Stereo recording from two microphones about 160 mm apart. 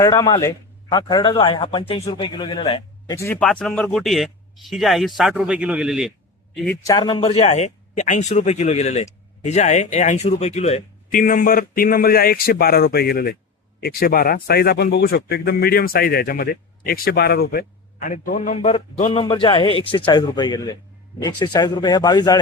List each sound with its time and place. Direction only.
0.0 s a man's voice: 25° left (ahead or behind)
3.4 s speech: 5° left (ahead or behind)
6.8 s speech: 25° left (ahead or behind); by 10.8 s 45° left (ahead or behind)
11.1 s a man's voice: 60° left (ahead or behind)
18.5 s a man's voice: 40° left (ahead or behind); by 22.4 s 25° left (ahead or behind)